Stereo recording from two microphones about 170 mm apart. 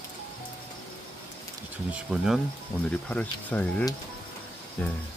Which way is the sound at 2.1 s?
5° right (ahead or behind).